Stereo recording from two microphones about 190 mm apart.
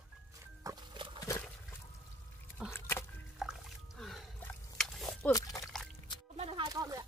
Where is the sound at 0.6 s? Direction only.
20° right (ahead or behind).